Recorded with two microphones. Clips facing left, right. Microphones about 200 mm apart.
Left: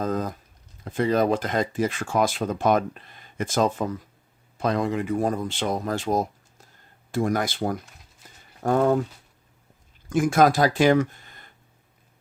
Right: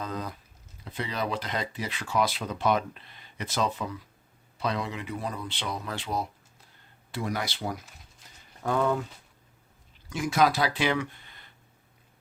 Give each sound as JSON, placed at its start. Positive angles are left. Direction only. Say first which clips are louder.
{"t": 0.0, "sound": "speech", "louder": "left 8 dB", "side_deg": 45}
{"t": 10.1, "sound": "speech", "louder": "left 6 dB", "side_deg": 50}